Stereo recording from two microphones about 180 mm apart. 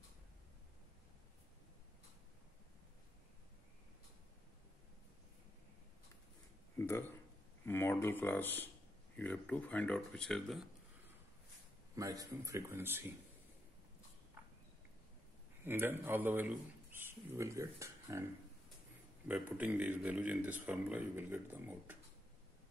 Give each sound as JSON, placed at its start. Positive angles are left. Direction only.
{"t": 6.8, "sound": "speech", "side_deg": 10}
{"t": 11.9, "sound": "a man's voice", "side_deg": -20}
{"t": 15.6, "sound": "a man's voice", "side_deg": -10}